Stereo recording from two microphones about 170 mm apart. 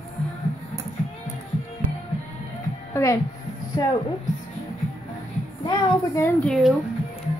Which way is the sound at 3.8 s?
20° left (ahead or behind).